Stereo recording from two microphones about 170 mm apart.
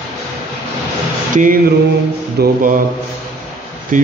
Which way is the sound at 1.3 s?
50° right (ahead or behind).